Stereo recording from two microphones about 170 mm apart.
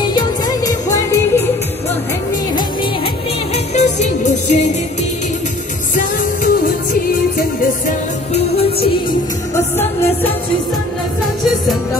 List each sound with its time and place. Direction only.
0.0 s music: 25° left (ahead or behind)
3.5 s music: 40° left (ahead or behind)
5.9 s music: 55° left (ahead or behind)
8.3 s music: 35° left (ahead or behind)